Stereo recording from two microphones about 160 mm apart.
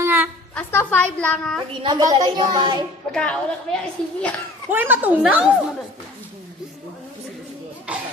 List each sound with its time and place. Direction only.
0.0 s a sound: 15° right (ahead or behind)
0.6 s a woman's voice: 15° left (ahead or behind)
1.8 s music: 25° right (ahead or behind)
3.1 s a child's voice: 10° left (ahead or behind)
4.6 s a woman's voice: 10° right (ahead or behind)
7.9 s a sound: 10° right (ahead or behind)